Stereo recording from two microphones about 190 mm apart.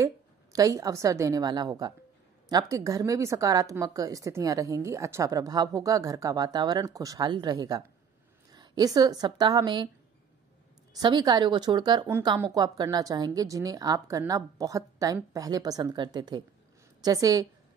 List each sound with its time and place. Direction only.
0.0 s a woman's voice: 15° right (ahead or behind)
11.0 s a woman's voice: 20° right (ahead or behind)